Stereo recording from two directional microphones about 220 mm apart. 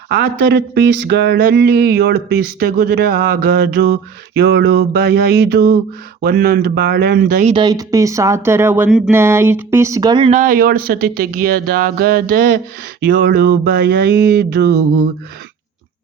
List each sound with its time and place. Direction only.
0.1 s speech: 50° right (ahead or behind)
7.5 s speech: 20° right (ahead or behind); by 14.8 s 45° right (ahead or behind)